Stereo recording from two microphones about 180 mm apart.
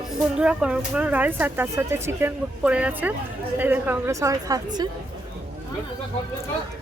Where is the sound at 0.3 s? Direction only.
5° right (ahead or behind); by 4.9 s 20° right (ahead or behind).